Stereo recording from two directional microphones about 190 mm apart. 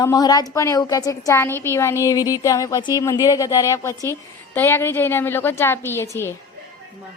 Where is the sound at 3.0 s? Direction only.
15° left (ahead or behind).